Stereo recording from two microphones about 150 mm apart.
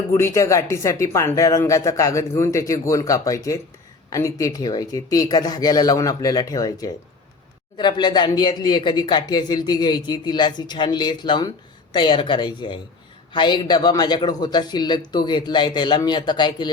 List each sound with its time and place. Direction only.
0.1 s speech: 20° left (ahead or behind)